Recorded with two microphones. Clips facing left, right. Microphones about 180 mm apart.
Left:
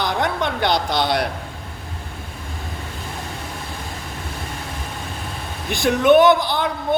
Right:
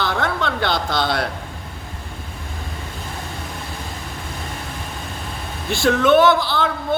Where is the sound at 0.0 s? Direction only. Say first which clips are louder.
Left 1 dB; 15° left (ahead or behind).